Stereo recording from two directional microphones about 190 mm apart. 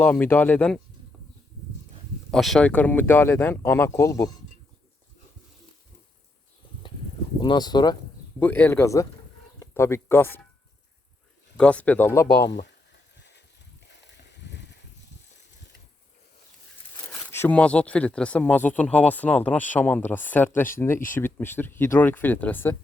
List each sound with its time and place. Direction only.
0.0 s speech: 10° left (ahead or behind)
2.3 s speech: centre (ahead or behind)
7.4 s speech: 20° left (ahead or behind)
8.4 s speech: 10° left (ahead or behind)
11.5 s speech: 5° left (ahead or behind)
17.1 s speech: 10° left (ahead or behind)